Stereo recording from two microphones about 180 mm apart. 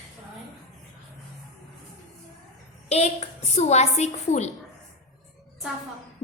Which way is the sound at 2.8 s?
35° left (ahead or behind).